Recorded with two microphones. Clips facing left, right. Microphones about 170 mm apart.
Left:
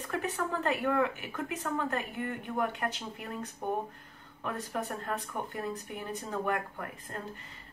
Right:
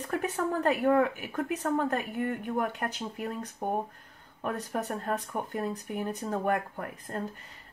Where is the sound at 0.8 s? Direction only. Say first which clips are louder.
Right 5 dB; 45° right (ahead or behind).